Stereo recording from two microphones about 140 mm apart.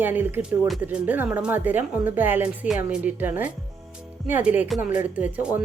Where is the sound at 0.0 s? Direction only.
15° right (ahead or behind).